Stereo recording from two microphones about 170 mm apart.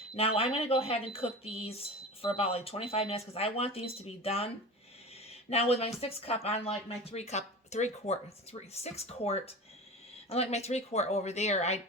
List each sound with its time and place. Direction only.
0.2 s speech: 35° left (ahead or behind)
5.5 s speech: 35° left (ahead or behind)